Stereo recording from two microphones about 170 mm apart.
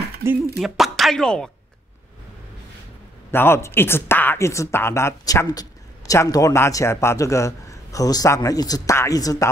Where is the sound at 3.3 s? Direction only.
15° left (ahead or behind).